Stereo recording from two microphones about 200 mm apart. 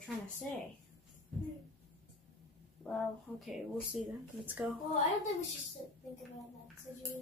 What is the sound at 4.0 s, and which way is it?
Speech, centre (ahead or behind).